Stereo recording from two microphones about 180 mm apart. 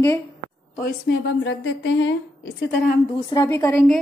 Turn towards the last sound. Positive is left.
turn(degrees=15)  # may be behind; listen again after turning